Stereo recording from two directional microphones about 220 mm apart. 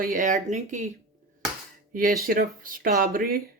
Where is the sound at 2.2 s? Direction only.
40° right (ahead or behind).